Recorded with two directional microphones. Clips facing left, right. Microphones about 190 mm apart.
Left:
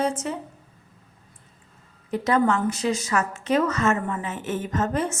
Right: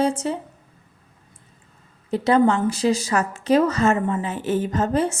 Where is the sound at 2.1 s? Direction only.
30° right (ahead or behind).